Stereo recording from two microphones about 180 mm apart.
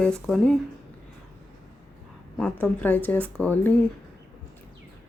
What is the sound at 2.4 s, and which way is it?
Speech, 10° left (ahead or behind).